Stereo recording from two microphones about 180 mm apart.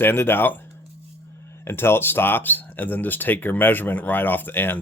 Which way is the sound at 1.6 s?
15° left (ahead or behind).